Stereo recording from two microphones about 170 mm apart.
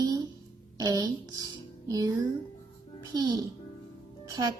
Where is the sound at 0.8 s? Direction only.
20° right (ahead or behind).